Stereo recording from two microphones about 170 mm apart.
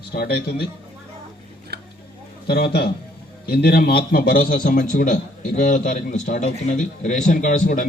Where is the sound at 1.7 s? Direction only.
70° right (ahead or behind).